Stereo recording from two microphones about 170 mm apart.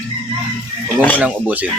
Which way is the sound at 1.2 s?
10° right (ahead or behind).